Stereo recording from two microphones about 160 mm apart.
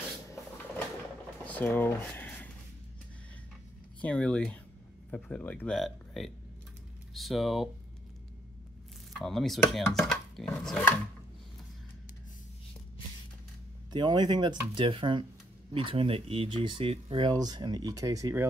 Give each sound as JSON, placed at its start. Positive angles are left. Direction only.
{"t": 1.4, "sound": "a sound", "side_deg": 10}
{"t": 4.0, "sound": "speech", "side_deg": 5}
{"t": 9.1, "sound": "speech", "side_deg": 0}
{"t": 13.9, "sound": "speech", "side_deg": -30}